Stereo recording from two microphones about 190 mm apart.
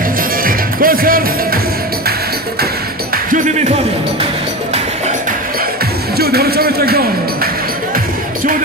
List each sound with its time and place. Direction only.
0.4 s music: 50° right (ahead or behind)
3.3 s music: 40° right (ahead or behind)
6.1 s a sound: 55° right (ahead or behind)